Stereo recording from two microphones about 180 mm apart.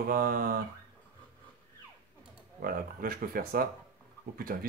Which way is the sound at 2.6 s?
55° right (ahead or behind).